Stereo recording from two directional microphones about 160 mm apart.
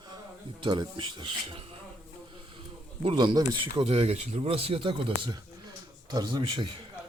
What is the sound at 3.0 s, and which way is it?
Speech, 30° right (ahead or behind).